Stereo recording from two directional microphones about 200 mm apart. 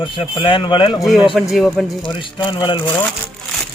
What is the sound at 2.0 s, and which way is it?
Speech, 25° left (ahead or behind).